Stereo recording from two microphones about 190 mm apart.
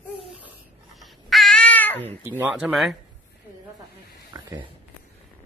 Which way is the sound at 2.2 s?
10° right (ahead or behind).